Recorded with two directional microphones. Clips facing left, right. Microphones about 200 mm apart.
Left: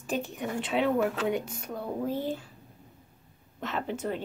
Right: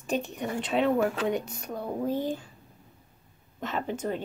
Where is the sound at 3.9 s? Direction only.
10° right (ahead or behind).